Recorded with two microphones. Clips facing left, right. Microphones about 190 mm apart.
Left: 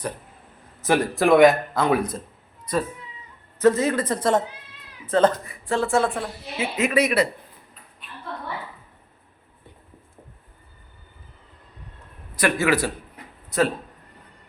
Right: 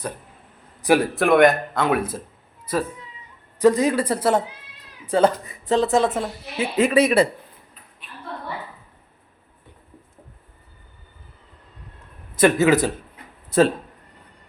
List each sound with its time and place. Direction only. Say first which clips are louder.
0.8 s a man's voice: right 2 dB; 10° right (ahead or behind)
3.6 s a woman's voice: right 2 dB; 15° right (ahead or behind)
12.4 s speech: right 5 dB; 20° right (ahead or behind)